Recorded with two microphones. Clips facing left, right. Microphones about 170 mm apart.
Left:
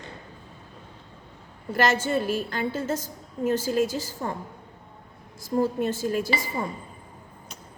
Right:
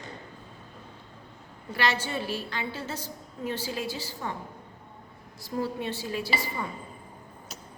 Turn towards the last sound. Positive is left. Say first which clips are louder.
# left 4 dB
turn(degrees=45)  # may be behind; listen again after turning